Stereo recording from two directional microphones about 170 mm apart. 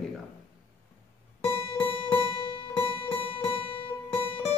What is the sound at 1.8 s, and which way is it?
Music, 30° left (ahead or behind).